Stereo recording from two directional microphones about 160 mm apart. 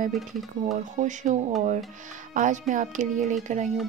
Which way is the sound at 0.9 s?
50° right (ahead or behind).